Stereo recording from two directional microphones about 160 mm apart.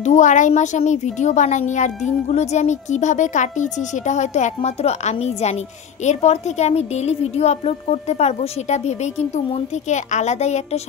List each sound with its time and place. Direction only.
0.0 s speech: 50° left (ahead or behind)